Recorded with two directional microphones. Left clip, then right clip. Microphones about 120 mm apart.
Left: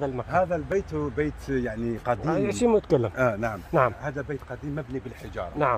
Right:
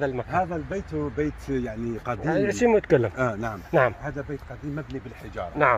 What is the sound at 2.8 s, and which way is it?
Speech, 10° right (ahead or behind).